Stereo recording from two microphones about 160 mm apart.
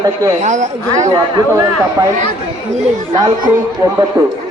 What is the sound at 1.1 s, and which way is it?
Speech, 20° right (ahead or behind).